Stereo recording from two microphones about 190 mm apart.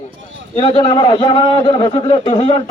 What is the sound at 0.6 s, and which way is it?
Speech, 25° left (ahead or behind).